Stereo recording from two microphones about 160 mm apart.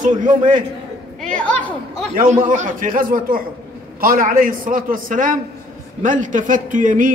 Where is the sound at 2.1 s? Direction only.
55° right (ahead or behind).